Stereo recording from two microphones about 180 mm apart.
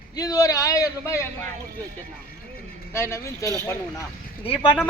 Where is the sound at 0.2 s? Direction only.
20° left (ahead or behind).